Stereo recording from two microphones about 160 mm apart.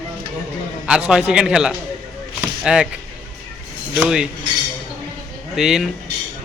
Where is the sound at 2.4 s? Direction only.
5° right (ahead or behind).